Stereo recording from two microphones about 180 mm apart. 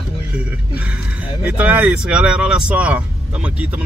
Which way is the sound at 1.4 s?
10° right (ahead or behind).